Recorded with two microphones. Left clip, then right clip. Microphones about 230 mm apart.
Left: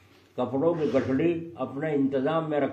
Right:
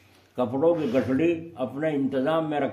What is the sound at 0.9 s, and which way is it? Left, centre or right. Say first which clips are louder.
A man's voice: right 1 dB; right.